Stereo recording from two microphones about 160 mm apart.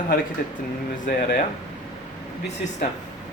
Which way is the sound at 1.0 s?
70° left (ahead or behind).